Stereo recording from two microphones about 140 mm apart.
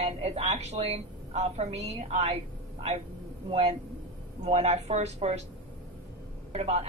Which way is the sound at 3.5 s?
50° right (ahead or behind).